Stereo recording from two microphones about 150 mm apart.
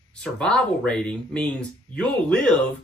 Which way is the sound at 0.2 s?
5° left (ahead or behind).